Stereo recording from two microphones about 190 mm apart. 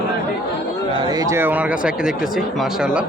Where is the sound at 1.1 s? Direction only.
15° right (ahead or behind).